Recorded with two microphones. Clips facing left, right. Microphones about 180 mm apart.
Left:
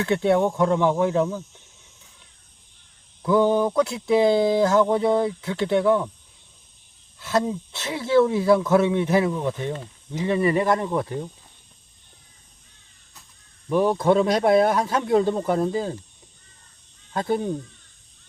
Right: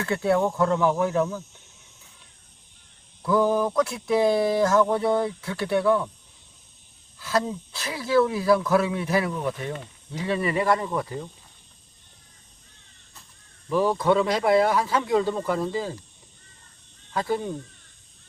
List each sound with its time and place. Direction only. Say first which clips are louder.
0.0 s speech: left 3 dB; 20° left (ahead or behind)
3.2 s speech: left 3 dB; 20° left (ahead or behind)
7.2 s speech: left 2 dB; 25° left (ahead or behind)
13.7 s speech: left 2 dB; 20° left (ahead or behind)
17.2 s speech: left 2 dB; 25° left (ahead or behind)